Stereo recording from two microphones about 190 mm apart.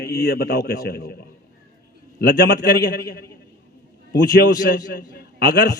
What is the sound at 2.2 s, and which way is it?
A man's voice, 55° left (ahead or behind).